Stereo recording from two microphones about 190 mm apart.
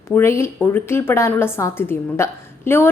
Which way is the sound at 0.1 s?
15° left (ahead or behind).